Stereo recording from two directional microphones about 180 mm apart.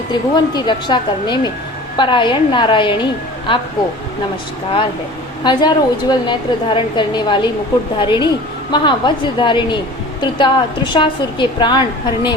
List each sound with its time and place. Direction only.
0.1 s a woman's voice: 25° left (ahead or behind)
5.4 s a woman's voice: 25° left (ahead or behind)